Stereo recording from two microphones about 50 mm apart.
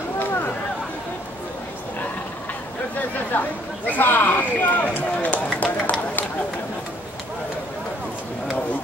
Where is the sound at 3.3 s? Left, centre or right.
Left.